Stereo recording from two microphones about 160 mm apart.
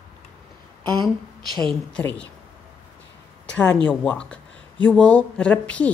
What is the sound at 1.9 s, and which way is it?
Speech, 5° left (ahead or behind).